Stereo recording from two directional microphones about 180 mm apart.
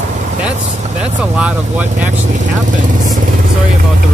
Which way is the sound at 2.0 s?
40° right (ahead or behind).